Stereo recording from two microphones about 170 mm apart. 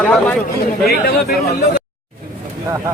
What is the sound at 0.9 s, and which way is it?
Speech, 65° left (ahead or behind).